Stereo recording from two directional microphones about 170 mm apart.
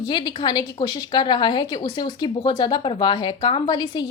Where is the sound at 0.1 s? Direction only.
25° left (ahead or behind).